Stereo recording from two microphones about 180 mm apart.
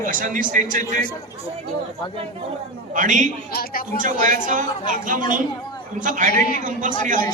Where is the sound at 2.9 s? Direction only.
45° right (ahead or behind).